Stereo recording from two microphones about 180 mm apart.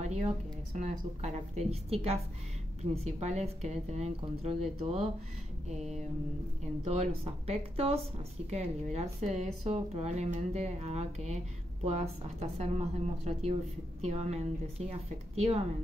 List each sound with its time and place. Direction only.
0.0 s music: 40° right (ahead or behind)
0.7 s speech: 40° right (ahead or behind)